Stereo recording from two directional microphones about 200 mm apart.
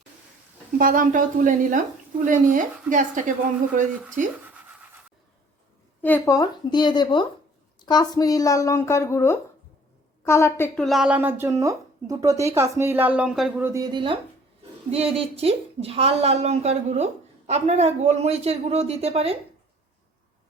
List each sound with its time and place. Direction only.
0.8 s a woman's voice: 45° right (ahead or behind)
6.0 s a woman's voice: 10° left (ahead or behind)
10.8 s a woman's voice: 5° right (ahead or behind); by 19.4 s 30° right (ahead or behind)